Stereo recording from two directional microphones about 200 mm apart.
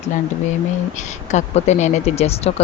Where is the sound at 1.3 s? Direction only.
35° left (ahead or behind).